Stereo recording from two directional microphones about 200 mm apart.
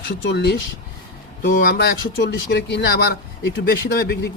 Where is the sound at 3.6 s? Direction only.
50° left (ahead or behind).